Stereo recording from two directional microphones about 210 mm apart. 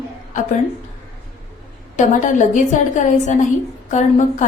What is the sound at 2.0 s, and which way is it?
A woman's voice, 35° left (ahead or behind).